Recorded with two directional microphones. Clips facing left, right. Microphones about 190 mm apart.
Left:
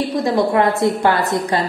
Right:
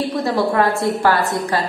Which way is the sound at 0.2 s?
15° left (ahead or behind).